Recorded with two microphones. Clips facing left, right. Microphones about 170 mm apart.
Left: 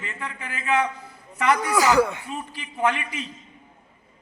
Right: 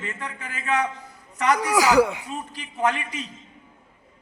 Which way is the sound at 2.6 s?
40° right (ahead or behind).